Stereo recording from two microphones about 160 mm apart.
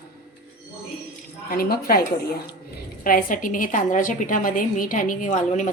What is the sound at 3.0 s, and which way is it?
A woman's voice, 60° left (ahead or behind).